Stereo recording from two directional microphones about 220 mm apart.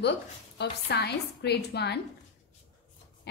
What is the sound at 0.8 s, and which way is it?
A woman's voice, 50° left (ahead or behind).